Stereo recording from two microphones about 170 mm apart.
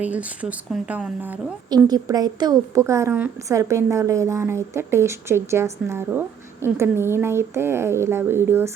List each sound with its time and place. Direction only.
0.0 s a woman's voice: 10° right (ahead or behind)
1.7 s a woman's voice: 20° right (ahead or behind)